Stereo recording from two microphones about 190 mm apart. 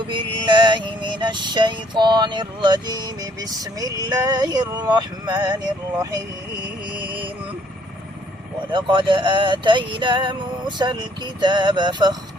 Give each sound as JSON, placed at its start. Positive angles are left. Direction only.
{"t": 0.1, "sound": "music", "side_deg": -25}
{"t": 6.9, "sound": "mantra", "side_deg": -25}
{"t": 8.7, "sound": "music", "side_deg": -25}